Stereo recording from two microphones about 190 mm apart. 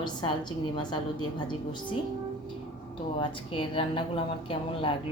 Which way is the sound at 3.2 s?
25° left (ahead or behind).